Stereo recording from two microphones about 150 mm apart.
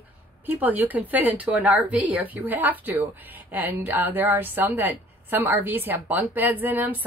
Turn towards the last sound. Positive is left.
turn(degrees=-10)  # may be behind; listen again after turning